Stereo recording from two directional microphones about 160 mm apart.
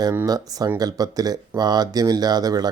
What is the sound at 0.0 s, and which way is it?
Speech, 20° right (ahead or behind).